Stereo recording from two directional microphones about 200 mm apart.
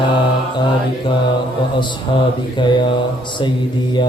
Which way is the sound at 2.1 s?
25° left (ahead or behind).